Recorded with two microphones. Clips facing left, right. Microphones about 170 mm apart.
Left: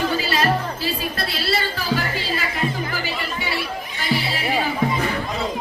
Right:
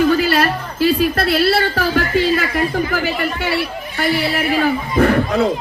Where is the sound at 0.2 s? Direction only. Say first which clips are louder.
Right 4 dB; 60° right (ahead or behind).